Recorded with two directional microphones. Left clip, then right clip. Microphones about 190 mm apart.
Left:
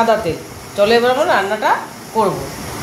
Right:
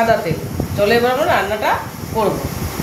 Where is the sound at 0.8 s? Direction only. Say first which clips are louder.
Left 2 dB; 20° left (ahead or behind).